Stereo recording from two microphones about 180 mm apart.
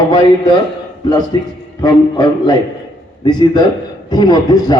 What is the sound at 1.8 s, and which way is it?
A man's voice, 25° left (ahead or behind).